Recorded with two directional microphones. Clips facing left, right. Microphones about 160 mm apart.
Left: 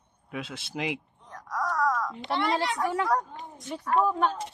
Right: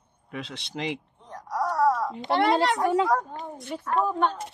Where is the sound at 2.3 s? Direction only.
60° right (ahead or behind).